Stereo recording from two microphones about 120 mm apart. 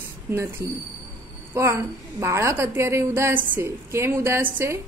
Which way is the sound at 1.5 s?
25° right (ahead or behind).